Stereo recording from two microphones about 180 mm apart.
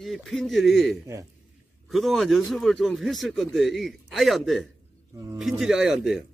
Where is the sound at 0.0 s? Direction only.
Centre (ahead or behind).